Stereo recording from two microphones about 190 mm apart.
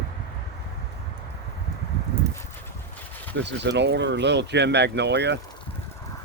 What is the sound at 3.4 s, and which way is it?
Speech, 65° right (ahead or behind).